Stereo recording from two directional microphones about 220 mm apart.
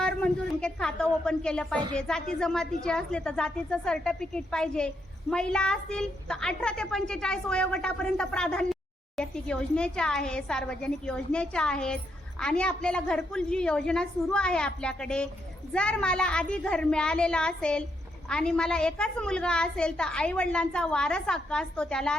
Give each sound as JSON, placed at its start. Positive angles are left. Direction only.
{"t": 0.0, "sound": "a woman's voice", "side_deg": 5}